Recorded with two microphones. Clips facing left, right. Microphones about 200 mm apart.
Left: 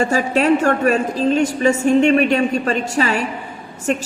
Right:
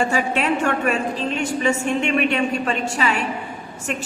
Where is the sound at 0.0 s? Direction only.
40° left (ahead or behind).